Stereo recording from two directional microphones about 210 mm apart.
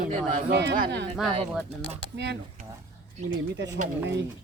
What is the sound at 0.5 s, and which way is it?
Speech, 55° right (ahead or behind).